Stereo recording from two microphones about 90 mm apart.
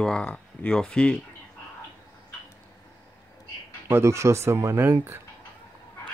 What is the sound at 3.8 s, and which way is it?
Speech, 30° right (ahead or behind).